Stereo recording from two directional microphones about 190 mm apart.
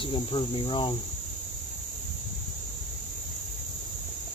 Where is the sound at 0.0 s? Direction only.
25° left (ahead or behind).